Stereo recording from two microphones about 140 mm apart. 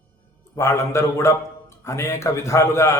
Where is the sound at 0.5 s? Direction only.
20° left (ahead or behind).